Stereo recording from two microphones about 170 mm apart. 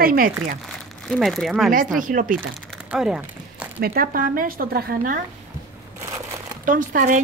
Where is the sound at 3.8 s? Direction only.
60° right (ahead or behind).